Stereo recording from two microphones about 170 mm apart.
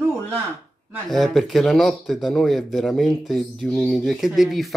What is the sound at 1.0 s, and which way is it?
Speech, centre (ahead or behind).